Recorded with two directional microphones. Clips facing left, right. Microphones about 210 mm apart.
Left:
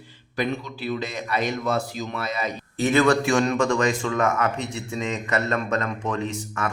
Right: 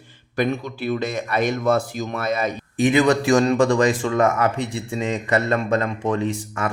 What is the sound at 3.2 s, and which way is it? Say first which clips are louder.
Speech: right 4 dB; 35° right (ahead or behind).